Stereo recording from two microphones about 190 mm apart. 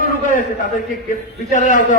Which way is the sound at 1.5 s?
45° left (ahead or behind).